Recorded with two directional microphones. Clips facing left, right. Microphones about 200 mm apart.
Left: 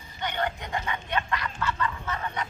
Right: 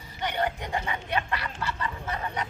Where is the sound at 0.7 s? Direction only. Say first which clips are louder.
Right 1 dB; 35° right (ahead or behind).